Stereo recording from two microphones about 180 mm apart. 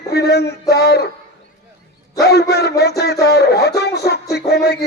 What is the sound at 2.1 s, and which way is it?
A man's voice, 65° left (ahead or behind).